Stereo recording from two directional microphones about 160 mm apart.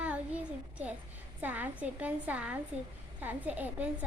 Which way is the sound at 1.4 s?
10° right (ahead or behind).